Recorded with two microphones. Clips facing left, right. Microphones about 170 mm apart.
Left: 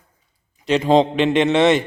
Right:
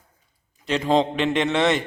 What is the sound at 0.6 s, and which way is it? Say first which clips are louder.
A man's voice: left 5 dB; 20° left (ahead or behind).